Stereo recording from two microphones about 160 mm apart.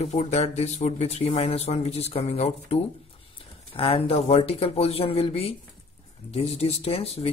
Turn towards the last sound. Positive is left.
turn(degrees=40)  # may be behind; listen again after turning